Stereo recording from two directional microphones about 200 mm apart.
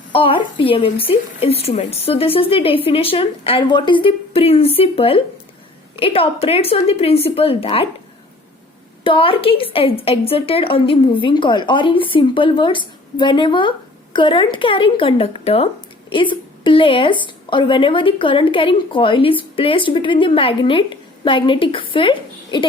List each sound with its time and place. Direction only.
0.1 s a woman's voice: 25° left (ahead or behind)
9.0 s a woman's voice: 25° left (ahead or behind)